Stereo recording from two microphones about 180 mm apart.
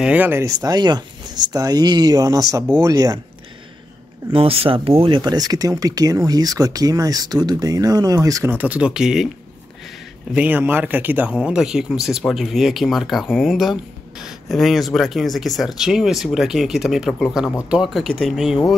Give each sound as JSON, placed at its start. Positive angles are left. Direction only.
{"t": 0.0, "sound": "speech", "side_deg": -10}
{"t": 4.3, "sound": "speech", "side_deg": -30}
{"t": 10.3, "sound": "speech", "side_deg": -10}